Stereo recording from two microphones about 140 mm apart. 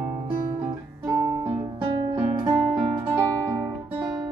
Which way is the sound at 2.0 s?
30° right (ahead or behind).